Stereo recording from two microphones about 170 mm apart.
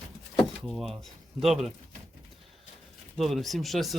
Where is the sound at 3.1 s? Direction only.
Centre (ahead or behind).